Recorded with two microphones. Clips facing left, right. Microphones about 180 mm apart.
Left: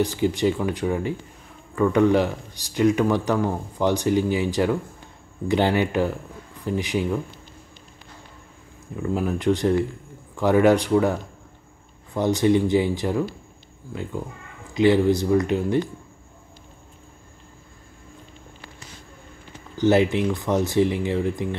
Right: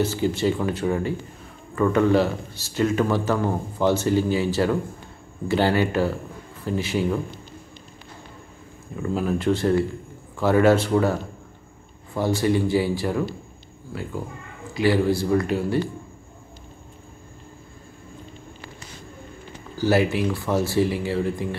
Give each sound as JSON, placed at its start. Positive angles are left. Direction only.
{"t": 0.0, "sound": "speech", "side_deg": 15}
{"t": 9.1, "sound": "speech", "side_deg": 15}
{"t": 12.1, "sound": "speech", "side_deg": 20}
{"t": 14.7, "sound": "speech", "side_deg": 20}
{"t": 19.8, "sound": "speech", "side_deg": 20}